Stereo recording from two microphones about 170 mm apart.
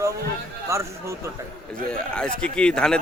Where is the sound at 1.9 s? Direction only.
5° left (ahead or behind).